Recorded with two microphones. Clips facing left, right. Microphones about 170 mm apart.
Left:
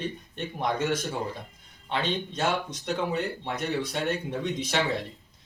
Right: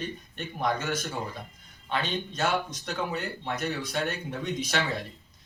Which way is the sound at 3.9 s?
25° left (ahead or behind).